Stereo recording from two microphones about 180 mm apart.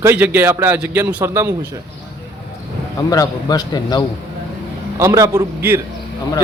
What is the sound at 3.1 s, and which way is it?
Speech, 20° left (ahead or behind).